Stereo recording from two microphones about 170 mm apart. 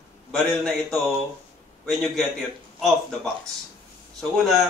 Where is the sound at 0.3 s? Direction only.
5° left (ahead or behind).